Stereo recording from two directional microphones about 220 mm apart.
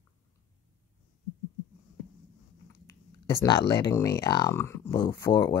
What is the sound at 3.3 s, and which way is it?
Speech, 20° left (ahead or behind).